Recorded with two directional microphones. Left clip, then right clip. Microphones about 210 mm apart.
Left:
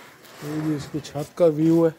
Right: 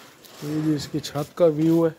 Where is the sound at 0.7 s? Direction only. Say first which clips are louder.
Right 2 dB; 20° right (ahead or behind).